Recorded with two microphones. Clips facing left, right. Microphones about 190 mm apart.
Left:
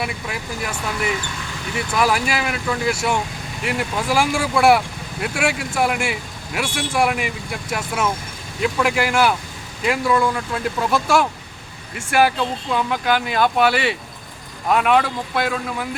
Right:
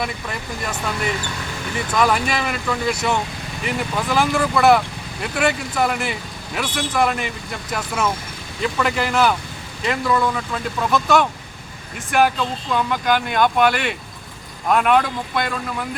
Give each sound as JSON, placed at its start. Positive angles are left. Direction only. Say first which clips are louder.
{"t": 0.0, "sound": "speech", "louder": "even", "side_deg": 5}